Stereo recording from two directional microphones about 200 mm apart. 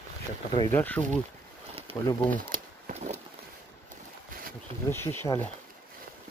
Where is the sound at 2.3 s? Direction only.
40° right (ahead or behind).